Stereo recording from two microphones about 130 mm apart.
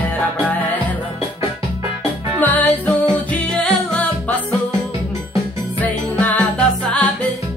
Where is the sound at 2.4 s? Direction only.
10° left (ahead or behind).